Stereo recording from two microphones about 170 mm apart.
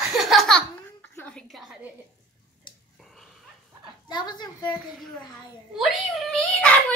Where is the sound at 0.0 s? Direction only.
Centre (ahead or behind).